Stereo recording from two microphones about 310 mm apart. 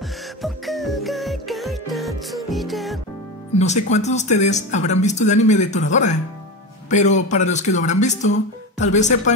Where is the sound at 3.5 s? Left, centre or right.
Left.